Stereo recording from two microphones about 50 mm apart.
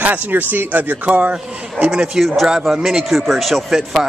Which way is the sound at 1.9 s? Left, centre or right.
Centre.